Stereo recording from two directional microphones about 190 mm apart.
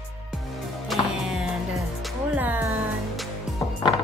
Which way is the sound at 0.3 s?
Centre (ahead or behind).